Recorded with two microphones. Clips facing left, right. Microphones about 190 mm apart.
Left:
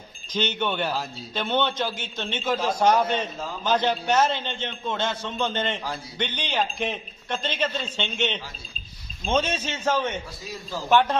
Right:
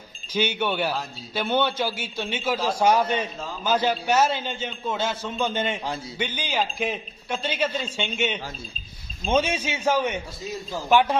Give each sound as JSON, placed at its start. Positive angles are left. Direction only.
{"t": 0.3, "sound": "a man's voice", "side_deg": -10}
{"t": 10.4, "sound": "a man's voice", "side_deg": -25}
{"t": 10.8, "sound": "a man's voice", "side_deg": -10}